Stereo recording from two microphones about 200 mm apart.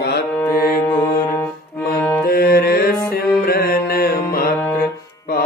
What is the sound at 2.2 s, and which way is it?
Music, 50° left (ahead or behind).